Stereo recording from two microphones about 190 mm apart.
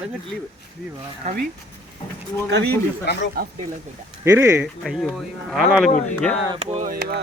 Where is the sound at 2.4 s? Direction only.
65° right (ahead or behind).